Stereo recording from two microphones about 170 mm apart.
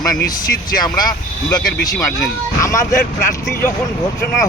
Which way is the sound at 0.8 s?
25° left (ahead or behind).